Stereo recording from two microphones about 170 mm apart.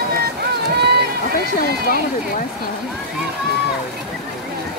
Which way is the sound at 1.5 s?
60° left (ahead or behind).